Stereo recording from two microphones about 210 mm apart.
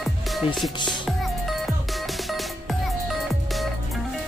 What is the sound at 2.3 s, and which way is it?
Music, centre (ahead or behind).